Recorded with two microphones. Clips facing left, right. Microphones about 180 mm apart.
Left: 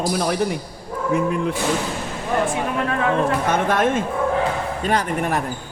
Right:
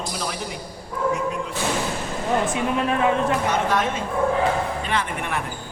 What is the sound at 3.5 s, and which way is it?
A man's voice, 50° left (ahead or behind).